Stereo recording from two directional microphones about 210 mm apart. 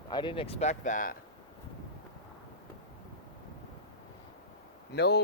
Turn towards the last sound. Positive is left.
turn(degrees=50)  # may be behind; listen again after turning